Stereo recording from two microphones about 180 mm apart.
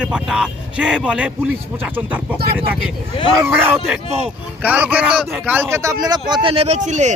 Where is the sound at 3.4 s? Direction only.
10° right (ahead or behind).